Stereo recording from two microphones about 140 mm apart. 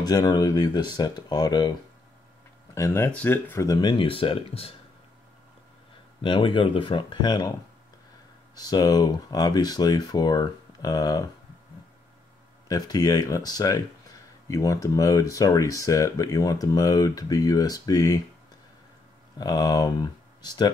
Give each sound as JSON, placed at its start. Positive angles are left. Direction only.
{"t": 0.0, "sound": "speech", "side_deg": 30}
{"t": 2.7, "sound": "speech", "side_deg": 20}
{"t": 3.9, "sound": "speech", "side_deg": 40}
{"t": 6.2, "sound": "speech", "side_deg": 35}
{"t": 8.5, "sound": "speech", "side_deg": 25}
{"t": 12.6, "sound": "speech", "side_deg": 25}
{"t": 19.3, "sound": "speech", "side_deg": 25}